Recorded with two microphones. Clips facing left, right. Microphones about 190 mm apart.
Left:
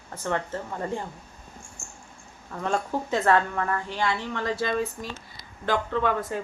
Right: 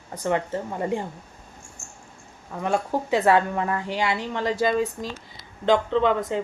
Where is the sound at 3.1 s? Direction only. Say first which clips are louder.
Right 3 dB; 15° right (ahead or behind).